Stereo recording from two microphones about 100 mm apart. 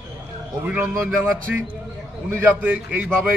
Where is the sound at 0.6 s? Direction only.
15° right (ahead or behind).